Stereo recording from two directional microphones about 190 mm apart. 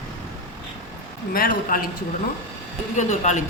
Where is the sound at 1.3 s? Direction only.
50° left (ahead or behind).